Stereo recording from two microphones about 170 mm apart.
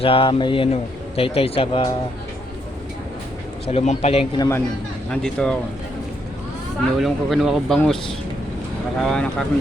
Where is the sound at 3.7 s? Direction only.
40° left (ahead or behind).